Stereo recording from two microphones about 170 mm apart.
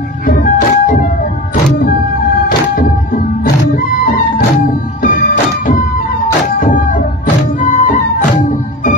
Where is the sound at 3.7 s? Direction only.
55° left (ahead or behind).